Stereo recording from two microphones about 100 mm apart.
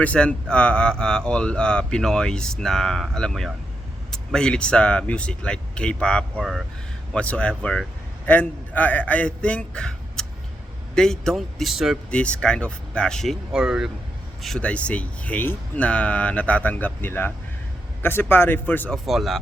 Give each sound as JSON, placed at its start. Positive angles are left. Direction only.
{"t": 0.0, "sound": "a man's voice", "side_deg": 15}
{"t": 12.1, "sound": "speech", "side_deg": 10}
{"t": 14.4, "sound": "speech", "side_deg": 10}
{"t": 18.9, "sound": "a man's voice", "side_deg": 0}